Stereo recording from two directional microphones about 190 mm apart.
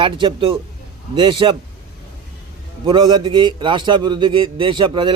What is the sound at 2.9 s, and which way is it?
A man's voice, 25° right (ahead or behind).